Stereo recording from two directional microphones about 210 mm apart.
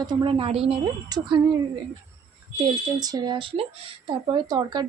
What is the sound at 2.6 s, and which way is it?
A woman's voice, 20° right (ahead or behind).